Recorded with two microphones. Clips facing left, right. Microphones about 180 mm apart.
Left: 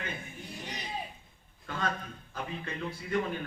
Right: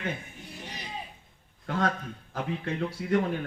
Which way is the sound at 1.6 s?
70° right (ahead or behind).